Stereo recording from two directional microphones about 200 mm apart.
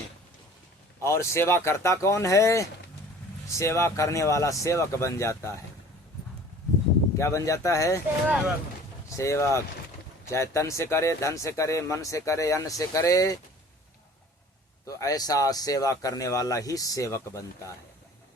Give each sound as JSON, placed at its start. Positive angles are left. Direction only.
{"t": 1.0, "sound": "speech", "side_deg": 15}
{"t": 7.2, "sound": "speech", "side_deg": 15}
{"t": 9.0, "sound": "speech", "side_deg": 15}
{"t": 14.8, "sound": "speech", "side_deg": 15}